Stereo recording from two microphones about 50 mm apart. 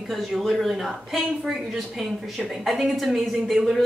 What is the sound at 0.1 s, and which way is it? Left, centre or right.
Speech, centre.